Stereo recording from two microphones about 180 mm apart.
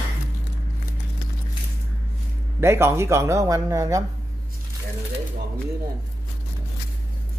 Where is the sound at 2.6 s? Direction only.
15° right (ahead or behind).